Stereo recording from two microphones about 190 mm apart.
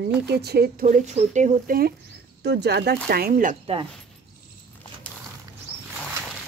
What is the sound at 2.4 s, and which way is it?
A woman's voice, 60° right (ahead or behind).